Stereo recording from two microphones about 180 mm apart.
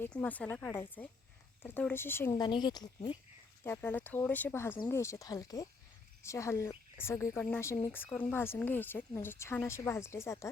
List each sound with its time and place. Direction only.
0.0 s speech: 10° left (ahead or behind)
2.4 s speech: 25° left (ahead or behind)
3.6 s speech: 10° left (ahead or behind)